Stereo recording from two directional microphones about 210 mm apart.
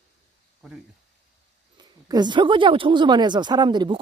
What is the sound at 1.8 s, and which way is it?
Speech, 20° right (ahead or behind).